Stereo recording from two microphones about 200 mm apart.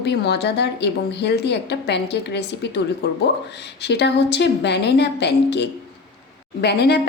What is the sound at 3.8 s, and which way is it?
A woman's voice, 60° left (ahead or behind).